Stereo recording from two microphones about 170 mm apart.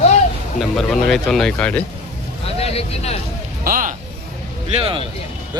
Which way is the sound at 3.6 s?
55° right (ahead or behind).